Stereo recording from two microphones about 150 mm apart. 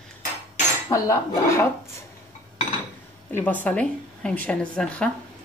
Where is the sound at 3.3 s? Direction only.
10° left (ahead or behind).